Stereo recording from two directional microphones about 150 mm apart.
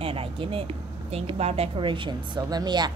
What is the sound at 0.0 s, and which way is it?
A woman's voice, 40° right (ahead or behind).